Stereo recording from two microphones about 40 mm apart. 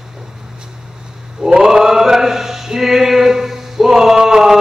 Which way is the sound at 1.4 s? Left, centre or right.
Centre.